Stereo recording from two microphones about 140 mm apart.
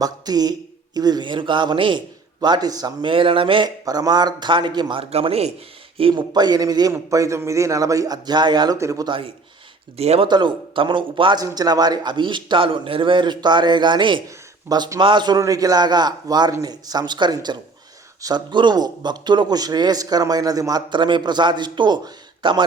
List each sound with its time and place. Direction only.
0.0 s a man's voice: 30° right (ahead or behind); by 5.5 s 45° right (ahead or behind)
6.0 s a man's voice: 35° right (ahead or behind)
10.0 s speech: 50° right (ahead or behind)
10.2 s a man's voice: 35° right (ahead or behind)